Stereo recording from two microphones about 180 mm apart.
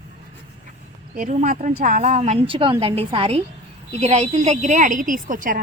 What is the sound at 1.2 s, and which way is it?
A woman's voice, 45° right (ahead or behind).